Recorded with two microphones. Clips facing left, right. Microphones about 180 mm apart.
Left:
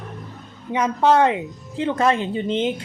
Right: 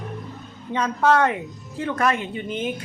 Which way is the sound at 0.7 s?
20° left (ahead or behind).